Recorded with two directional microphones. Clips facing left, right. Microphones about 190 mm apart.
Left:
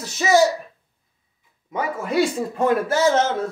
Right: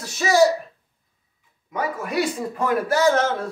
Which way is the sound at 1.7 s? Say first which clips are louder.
Left 2 dB; 25° left (ahead or behind).